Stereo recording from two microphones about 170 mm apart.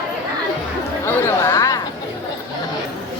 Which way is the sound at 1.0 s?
15° left (ahead or behind).